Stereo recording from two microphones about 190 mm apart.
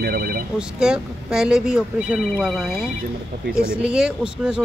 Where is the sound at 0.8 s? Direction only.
5° right (ahead or behind).